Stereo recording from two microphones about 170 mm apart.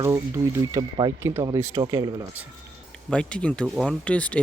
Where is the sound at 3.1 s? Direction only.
5° left (ahead or behind).